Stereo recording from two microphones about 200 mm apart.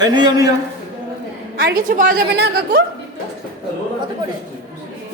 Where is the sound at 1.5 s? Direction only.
45° right (ahead or behind).